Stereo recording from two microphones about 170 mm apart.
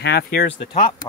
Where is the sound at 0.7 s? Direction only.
30° left (ahead or behind).